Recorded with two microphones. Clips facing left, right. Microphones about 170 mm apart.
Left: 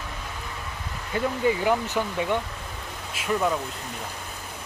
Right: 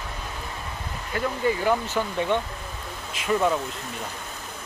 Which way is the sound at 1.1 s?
15° left (ahead or behind).